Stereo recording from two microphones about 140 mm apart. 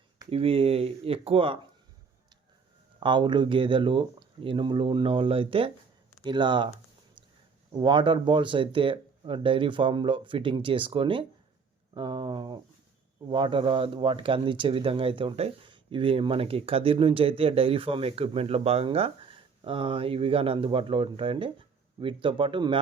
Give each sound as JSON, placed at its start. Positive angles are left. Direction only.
{"t": 0.3, "sound": "speech", "side_deg": -45}
{"t": 3.0, "sound": "speech", "side_deg": -35}
{"t": 7.8, "sound": "speech", "side_deg": -35}